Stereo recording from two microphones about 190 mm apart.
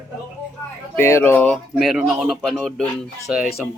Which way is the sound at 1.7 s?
Centre (ahead or behind).